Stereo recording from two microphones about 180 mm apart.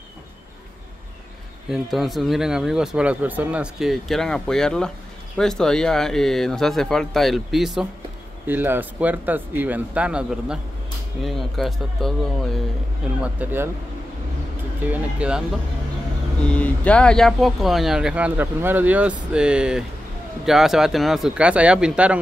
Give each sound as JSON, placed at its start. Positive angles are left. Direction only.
{"t": 1.7, "sound": "speech", "side_deg": 0}
{"t": 13.2, "sound": "speech", "side_deg": -10}
{"t": 14.9, "sound": "speech", "side_deg": -5}
{"t": 16.4, "sound": "speech", "side_deg": 5}